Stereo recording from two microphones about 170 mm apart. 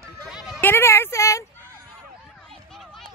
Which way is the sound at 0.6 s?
15° left (ahead or behind).